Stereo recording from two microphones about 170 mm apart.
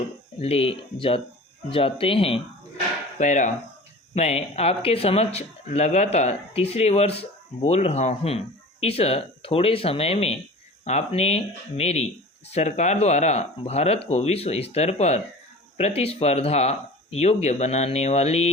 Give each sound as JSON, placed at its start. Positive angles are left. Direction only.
{"t": 0.3, "sound": "speech", "side_deg": 35}
{"t": 3.2, "sound": "a sound", "side_deg": 45}
{"t": 4.1, "sound": "speech", "side_deg": 40}